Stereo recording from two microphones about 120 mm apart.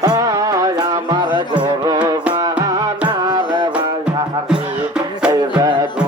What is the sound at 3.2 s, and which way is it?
Music, 40° right (ahead or behind).